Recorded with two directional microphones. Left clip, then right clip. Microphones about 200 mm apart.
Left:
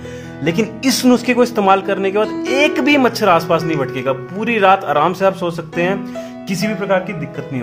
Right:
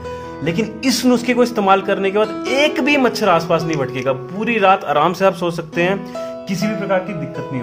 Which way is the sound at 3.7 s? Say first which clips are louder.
Left 1 dB; centre (ahead or behind).